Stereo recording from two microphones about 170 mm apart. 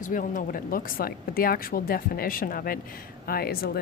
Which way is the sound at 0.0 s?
50° left (ahead or behind).